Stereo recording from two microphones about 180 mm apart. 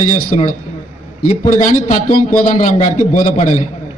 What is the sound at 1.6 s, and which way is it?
A man's voice, 45° left (ahead or behind).